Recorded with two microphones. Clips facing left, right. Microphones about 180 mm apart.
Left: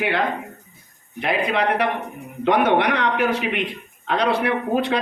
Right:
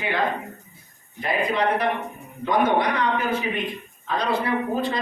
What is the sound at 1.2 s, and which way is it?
A woman's voice, 70° left (ahead or behind).